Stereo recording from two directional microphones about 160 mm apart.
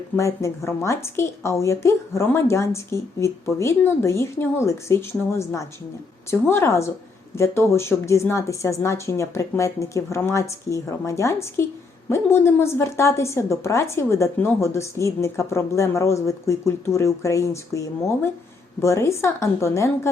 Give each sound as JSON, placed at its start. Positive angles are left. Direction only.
{"t": 0.2, "sound": "a woman's voice", "side_deg": 20}